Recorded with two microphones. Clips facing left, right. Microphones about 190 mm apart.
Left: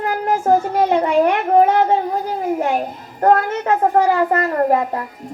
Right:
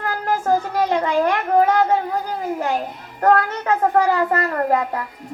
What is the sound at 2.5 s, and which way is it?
Child singing, 25° left (ahead or behind).